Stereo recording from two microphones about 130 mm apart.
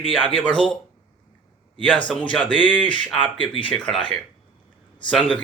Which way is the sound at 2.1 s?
10° left (ahead or behind).